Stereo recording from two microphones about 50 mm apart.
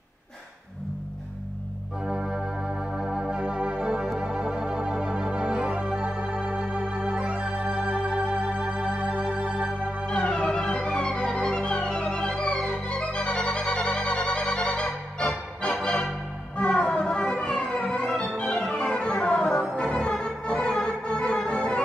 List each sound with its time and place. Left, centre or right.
2.0 s organ: centre
10.0 s music: left
15.8 s organ: centre
16.5 s music: centre
17.7 s music: left
18.0 s music: centre